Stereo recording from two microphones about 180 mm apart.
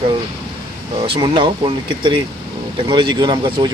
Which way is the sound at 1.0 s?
30° right (ahead or behind).